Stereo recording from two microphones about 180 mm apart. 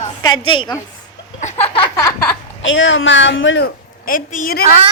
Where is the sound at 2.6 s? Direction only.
90° left.